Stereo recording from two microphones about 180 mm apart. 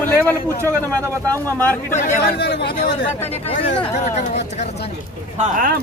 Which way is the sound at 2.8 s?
35° left (ahead or behind).